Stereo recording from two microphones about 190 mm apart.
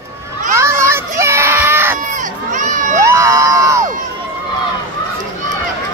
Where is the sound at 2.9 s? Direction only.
15° right (ahead or behind).